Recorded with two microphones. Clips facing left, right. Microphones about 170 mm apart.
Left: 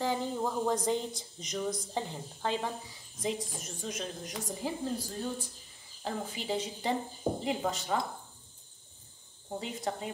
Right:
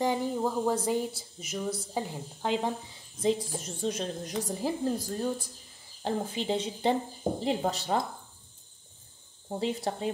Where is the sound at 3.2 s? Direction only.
30° right (ahead or behind).